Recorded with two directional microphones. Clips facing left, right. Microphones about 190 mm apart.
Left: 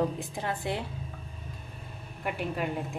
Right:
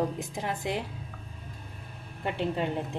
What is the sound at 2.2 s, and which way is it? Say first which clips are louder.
Speech: right 2 dB; 25° right (ahead or behind).